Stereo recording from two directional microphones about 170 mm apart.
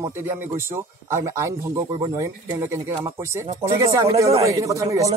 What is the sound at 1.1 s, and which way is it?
Speech, 20° right (ahead or behind).